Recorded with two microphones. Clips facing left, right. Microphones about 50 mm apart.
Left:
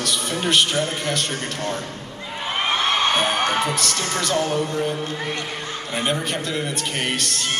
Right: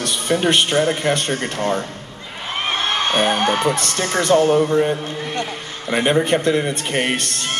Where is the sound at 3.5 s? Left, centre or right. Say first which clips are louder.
Right 3 dB; right.